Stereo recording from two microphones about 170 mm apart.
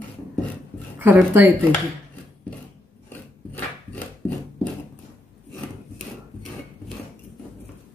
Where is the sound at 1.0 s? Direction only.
10° right (ahead or behind).